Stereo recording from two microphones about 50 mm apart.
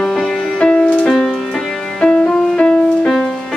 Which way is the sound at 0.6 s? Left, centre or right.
Left.